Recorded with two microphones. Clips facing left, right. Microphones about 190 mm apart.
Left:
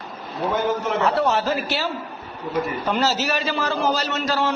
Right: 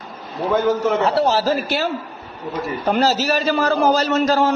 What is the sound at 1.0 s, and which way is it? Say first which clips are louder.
A man's voice: right 3 dB; 30° right (ahead or behind).